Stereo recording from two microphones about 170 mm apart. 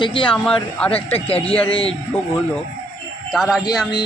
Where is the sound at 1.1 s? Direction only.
35° left (ahead or behind).